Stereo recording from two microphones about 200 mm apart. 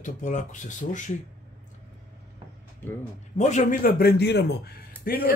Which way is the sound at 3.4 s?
35° left (ahead or behind).